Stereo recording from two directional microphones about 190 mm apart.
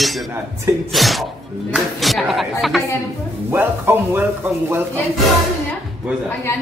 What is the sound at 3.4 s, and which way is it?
A man's voice, 10° right (ahead or behind).